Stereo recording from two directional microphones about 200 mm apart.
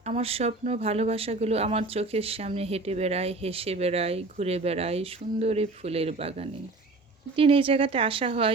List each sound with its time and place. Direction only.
0.0 s speech: 30° right (ahead or behind)